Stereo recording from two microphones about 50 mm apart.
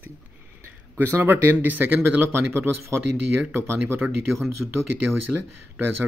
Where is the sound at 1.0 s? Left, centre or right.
Right.